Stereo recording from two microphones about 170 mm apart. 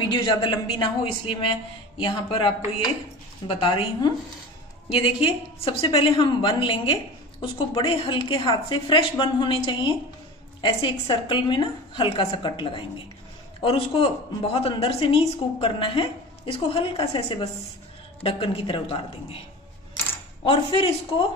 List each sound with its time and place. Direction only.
0.1 s a woman's voice: 25° left (ahead or behind)
20.4 s a woman's voice: 35° left (ahead or behind)